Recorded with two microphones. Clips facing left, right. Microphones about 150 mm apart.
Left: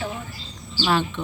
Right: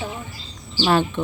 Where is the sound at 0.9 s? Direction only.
45° right (ahead or behind).